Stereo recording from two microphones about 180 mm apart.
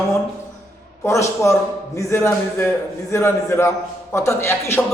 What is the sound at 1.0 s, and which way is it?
A man's voice, 15° left (ahead or behind).